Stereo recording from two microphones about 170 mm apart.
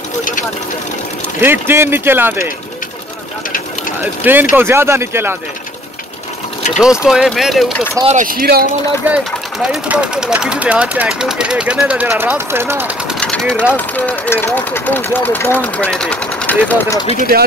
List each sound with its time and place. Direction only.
1.4 s speech: 15° right (ahead or behind)
4.0 s speech: 10° right (ahead or behind)
6.8 s speech: 5° right (ahead or behind)
8.0 s speech: 40° right (ahead or behind)
8.3 s speech: 60° right (ahead or behind)
9.0 s speech: 5° right (ahead or behind)
13.2 s speech: 5° left (ahead or behind)
17.3 s speech: 60° right (ahead or behind)